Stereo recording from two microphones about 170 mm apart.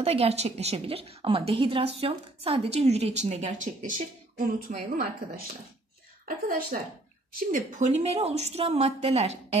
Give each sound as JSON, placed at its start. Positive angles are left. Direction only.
{"t": 0.0, "sound": "a woman's voice", "side_deg": -35}
{"t": 6.7, "sound": "a woman's voice", "side_deg": -50}